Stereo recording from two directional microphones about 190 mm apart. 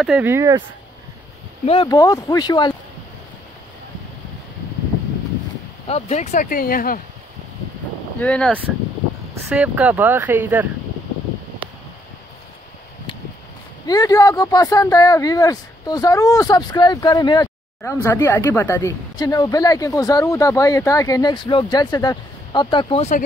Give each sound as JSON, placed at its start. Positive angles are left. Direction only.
{"t": 0.0, "sound": "speech", "side_deg": 0}
{"t": 0.3, "sound": "speech", "side_deg": -15}
{"t": 1.7, "sound": "speech", "side_deg": 20}
{"t": 5.9, "sound": "speech", "side_deg": 35}
{"t": 8.2, "sound": "speech", "side_deg": 5}
{"t": 9.3, "sound": "speech", "side_deg": -10}
{"t": 13.8, "sound": "speech", "side_deg": 20}